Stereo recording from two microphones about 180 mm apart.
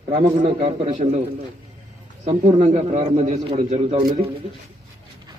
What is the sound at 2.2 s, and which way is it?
A man's voice, 35° right (ahead or behind).